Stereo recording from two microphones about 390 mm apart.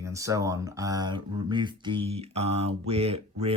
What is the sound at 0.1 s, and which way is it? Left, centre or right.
Speech, centre.